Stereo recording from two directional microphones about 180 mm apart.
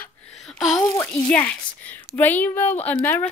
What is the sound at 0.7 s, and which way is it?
Speech, 15° left (ahead or behind).